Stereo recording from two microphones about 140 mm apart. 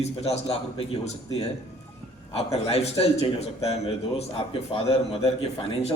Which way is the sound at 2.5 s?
45° left (ahead or behind).